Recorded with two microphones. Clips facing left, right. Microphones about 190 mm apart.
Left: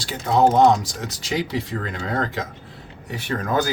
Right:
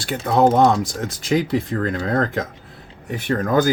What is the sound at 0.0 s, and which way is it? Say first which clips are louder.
Speech: right 2 dB; 55° right (ahead or behind).